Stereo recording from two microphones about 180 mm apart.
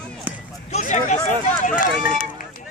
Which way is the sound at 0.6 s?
40° left (ahead or behind).